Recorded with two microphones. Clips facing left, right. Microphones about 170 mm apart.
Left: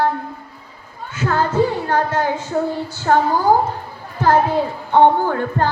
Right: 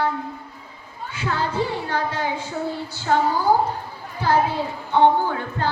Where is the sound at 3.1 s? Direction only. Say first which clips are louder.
Left 5 dB; 55° left (ahead or behind).